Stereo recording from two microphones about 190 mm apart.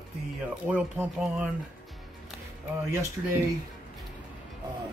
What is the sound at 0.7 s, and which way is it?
Speech, 5° right (ahead or behind).